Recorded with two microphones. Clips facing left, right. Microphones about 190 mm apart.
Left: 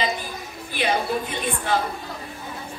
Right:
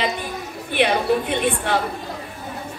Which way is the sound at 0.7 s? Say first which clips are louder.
Right 5 dB; 60° right (ahead or behind).